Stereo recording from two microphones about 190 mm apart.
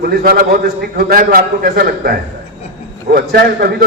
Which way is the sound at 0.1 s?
50° right (ahead or behind).